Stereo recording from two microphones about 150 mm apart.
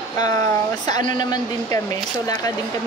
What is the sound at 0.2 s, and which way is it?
Speech, 25° left (ahead or behind).